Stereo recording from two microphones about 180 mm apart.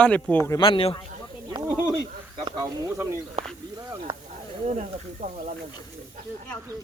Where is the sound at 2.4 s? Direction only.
20° right (ahead or behind).